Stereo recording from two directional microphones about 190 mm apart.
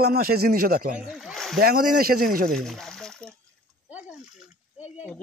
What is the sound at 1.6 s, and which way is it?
Speech, 50° right (ahead or behind).